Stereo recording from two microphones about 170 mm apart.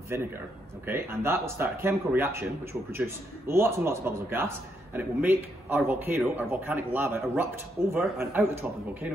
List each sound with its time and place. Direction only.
0.1 s a man's voice: 15° right (ahead or behind)